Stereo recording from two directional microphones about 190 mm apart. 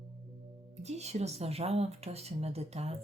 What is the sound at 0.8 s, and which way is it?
Speech, 35° right (ahead or behind).